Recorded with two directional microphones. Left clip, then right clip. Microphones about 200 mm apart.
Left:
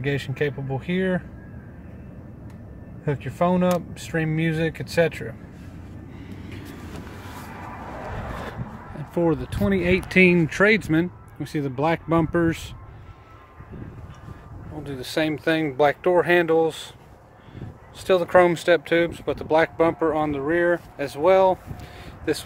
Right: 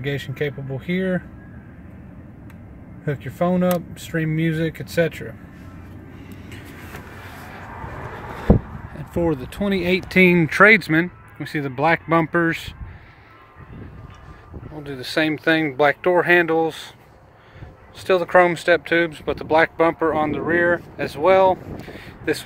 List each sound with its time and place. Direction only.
0.0 s speech: 15° right (ahead or behind)
3.1 s speech: 15° right (ahead or behind)
8.5 s speech: 10° right (ahead or behind)
14.8 s speech: 5° right (ahead or behind)
18.0 s speech: centre (ahead or behind)